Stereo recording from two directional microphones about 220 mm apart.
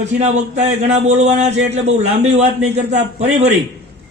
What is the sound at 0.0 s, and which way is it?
A man's voice, 30° right (ahead or behind).